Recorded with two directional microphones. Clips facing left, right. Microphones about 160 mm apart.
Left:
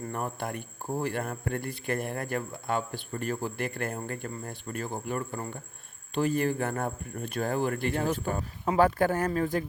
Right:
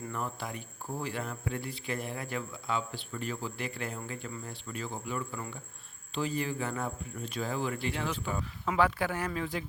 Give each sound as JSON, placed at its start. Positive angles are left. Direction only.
{"t": 0.1, "sound": "speech", "side_deg": 55}